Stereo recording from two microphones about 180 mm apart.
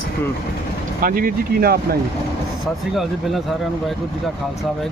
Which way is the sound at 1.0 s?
50° right (ahead or behind).